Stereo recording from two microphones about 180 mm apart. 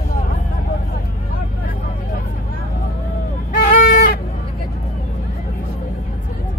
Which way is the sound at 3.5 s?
50° left (ahead or behind).